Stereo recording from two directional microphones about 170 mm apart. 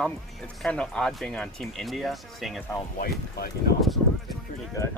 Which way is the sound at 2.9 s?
60° left (ahead or behind).